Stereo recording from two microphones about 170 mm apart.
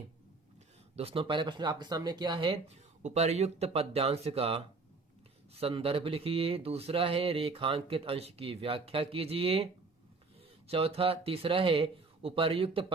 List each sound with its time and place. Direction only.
0.9 s speech: 35° right (ahead or behind)
10.7 s speech: 35° right (ahead or behind)